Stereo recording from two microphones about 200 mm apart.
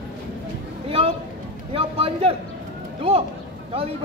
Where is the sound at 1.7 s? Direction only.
30° right (ahead or behind).